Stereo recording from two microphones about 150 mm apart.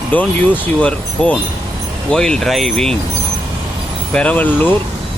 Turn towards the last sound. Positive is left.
turn(degrees=10)  # may be behind; listen again after turning